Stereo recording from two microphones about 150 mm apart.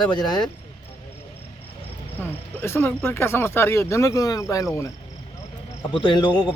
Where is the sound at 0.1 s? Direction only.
30° left (ahead or behind).